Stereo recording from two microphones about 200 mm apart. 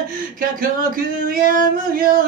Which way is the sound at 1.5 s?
45° right (ahead or behind).